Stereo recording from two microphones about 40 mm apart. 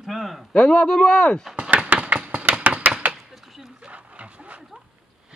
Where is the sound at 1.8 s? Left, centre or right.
Right.